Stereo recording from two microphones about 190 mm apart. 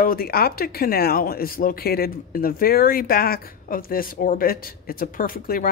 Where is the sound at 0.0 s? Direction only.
50° left (ahead or behind).